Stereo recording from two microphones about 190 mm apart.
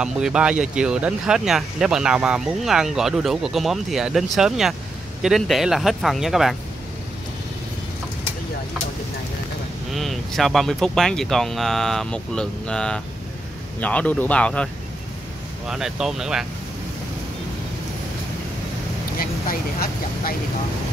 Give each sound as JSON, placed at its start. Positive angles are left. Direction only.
{"t": 0.0, "sound": "speech", "side_deg": -5}
{"t": 9.9, "sound": "speech", "side_deg": 0}
{"t": 19.1, "sound": "speech", "side_deg": 50}